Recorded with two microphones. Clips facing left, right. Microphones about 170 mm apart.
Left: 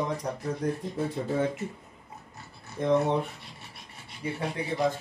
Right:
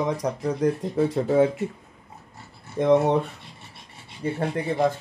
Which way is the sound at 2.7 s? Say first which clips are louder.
Right 6 dB; 80° right.